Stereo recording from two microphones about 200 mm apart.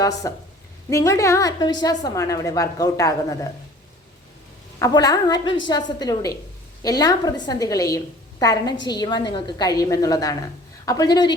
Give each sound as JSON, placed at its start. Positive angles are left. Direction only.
{"t": 0.0, "sound": "a woman's voice", "side_deg": 15}
{"t": 4.8, "sound": "a woman's voice", "side_deg": 20}